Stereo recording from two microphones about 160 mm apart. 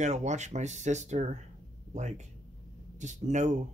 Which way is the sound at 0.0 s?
45° right (ahead or behind).